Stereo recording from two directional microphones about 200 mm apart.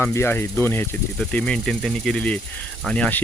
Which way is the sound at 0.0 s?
10° left (ahead or behind).